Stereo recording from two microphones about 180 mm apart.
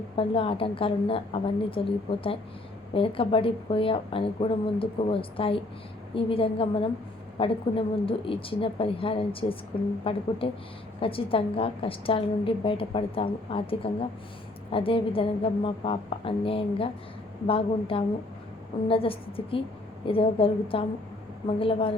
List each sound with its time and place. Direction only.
0.2 s a woman's voice: 30° left (ahead or behind)